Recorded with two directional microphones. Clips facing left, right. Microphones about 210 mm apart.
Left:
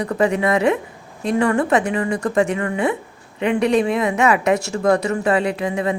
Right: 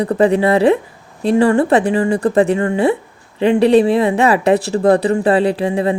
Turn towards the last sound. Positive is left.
turn(degrees=-30)  # may be behind; listen again after turning